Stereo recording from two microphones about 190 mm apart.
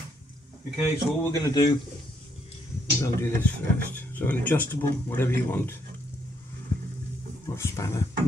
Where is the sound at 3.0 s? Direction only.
15° left (ahead or behind).